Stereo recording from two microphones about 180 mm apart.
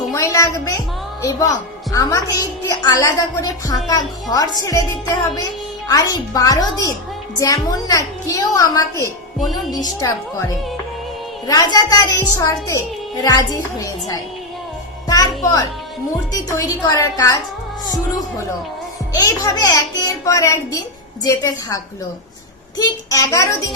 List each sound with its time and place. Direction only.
0.1 s a woman's voice: 15° left (ahead or behind)
11.4 s a woman's voice: 20° left (ahead or behind)
23.0 s a woman's voice: 20° left (ahead or behind)